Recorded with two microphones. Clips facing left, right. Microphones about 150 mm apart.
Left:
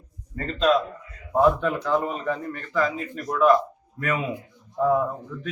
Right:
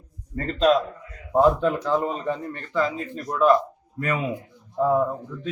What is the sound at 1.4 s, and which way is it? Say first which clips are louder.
Speech: right 1 dB; 30° right (ahead or behind).